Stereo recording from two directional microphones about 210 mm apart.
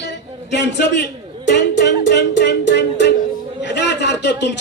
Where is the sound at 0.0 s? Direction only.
55° left (ahead or behind).